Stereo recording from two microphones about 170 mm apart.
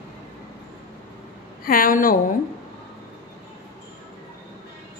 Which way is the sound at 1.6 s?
55° left (ahead or behind).